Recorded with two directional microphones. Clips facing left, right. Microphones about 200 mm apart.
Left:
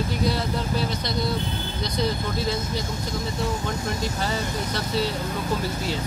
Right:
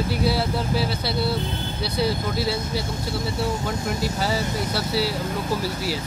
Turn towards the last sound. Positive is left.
turn(degrees=-10)  # may be behind; listen again after turning